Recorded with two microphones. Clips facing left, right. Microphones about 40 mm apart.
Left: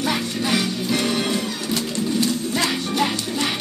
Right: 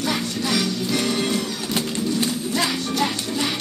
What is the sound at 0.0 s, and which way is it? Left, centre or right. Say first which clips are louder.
Music: left 1 dB; centre.